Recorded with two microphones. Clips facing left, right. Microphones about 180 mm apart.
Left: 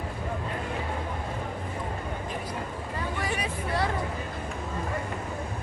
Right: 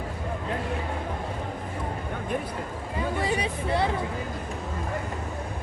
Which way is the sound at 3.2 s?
25° right (ahead or behind).